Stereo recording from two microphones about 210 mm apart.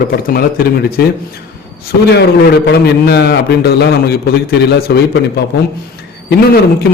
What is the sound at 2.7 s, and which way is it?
A man's voice, 50° left (ahead or behind).